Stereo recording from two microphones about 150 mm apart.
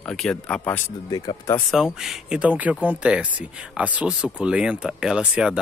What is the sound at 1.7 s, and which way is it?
Speech, centre (ahead or behind).